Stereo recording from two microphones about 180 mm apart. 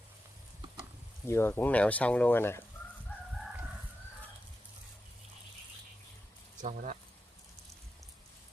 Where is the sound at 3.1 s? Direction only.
10° left (ahead or behind).